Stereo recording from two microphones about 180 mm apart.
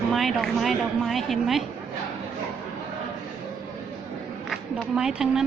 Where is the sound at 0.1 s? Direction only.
Centre (ahead or behind).